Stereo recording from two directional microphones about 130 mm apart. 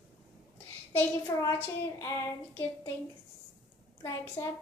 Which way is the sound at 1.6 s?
20° left (ahead or behind).